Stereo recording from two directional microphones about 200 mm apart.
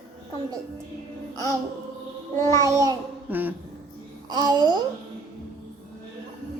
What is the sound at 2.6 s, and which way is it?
Child singing, 15° right (ahead or behind).